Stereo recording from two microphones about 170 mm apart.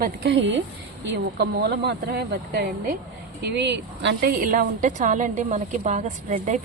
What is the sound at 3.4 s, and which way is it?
Speech, 85° right.